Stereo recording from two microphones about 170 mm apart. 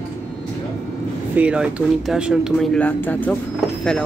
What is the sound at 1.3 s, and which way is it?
Speech, 5° right (ahead or behind).